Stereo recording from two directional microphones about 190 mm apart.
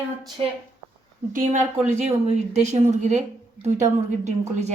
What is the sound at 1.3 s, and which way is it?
A woman's voice, 45° right (ahead or behind).